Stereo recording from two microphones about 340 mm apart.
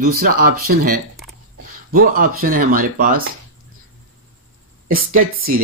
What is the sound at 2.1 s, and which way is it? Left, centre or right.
Speech, right.